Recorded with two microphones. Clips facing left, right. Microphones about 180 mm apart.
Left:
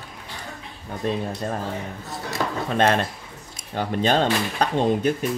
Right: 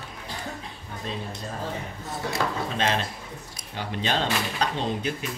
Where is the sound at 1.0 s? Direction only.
55° left (ahead or behind).